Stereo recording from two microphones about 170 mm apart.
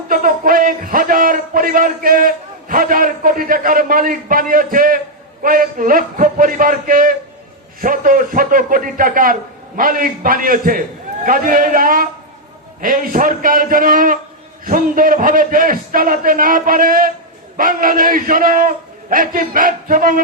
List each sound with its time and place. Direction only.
0.1 s a man's voice: 55° right (ahead or behind)